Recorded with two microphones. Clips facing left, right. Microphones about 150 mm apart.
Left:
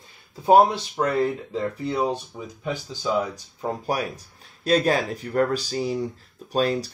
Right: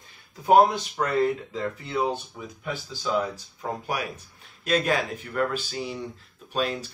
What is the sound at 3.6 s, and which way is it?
Speech, 35° left (ahead or behind).